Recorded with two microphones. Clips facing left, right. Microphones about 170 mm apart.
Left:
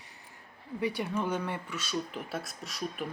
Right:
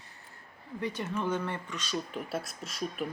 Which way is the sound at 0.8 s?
15° left (ahead or behind).